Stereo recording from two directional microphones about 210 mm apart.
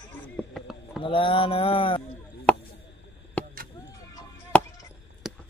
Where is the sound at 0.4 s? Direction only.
Centre (ahead or behind).